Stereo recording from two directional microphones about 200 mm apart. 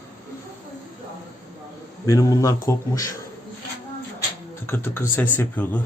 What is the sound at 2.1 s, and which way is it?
Speech, 15° left (ahead or behind).